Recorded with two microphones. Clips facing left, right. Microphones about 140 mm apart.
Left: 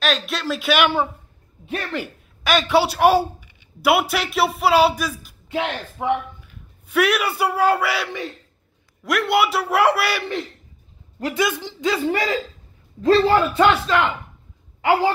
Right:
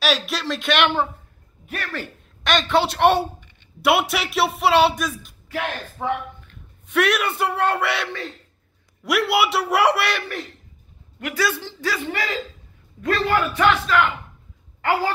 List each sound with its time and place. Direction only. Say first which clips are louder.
0.0 s a man's voice: even; centre (ahead or behind)
1.7 s speech: left 4 dB; 20° left (ahead or behind)
2.0 s a woman's voice: left 1 dB; 10° left (ahead or behind)
5.5 s a man's voice: left 3 dB; 20° left (ahead or behind); by 10.2 s 5° left (ahead or behind)
11.3 s speech: left 1 dB; 15° left (ahead or behind)
13.0 s speech: left 6 dB; 30° left (ahead or behind)
14.8 s a woman's voice: left 4 dB; 15° left (ahead or behind)